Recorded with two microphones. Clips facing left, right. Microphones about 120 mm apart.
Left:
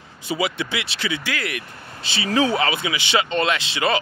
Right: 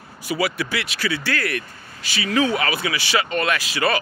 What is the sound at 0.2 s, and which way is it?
Speech, 25° left (ahead or behind).